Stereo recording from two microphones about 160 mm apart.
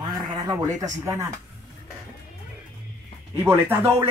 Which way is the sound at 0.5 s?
20° right (ahead or behind).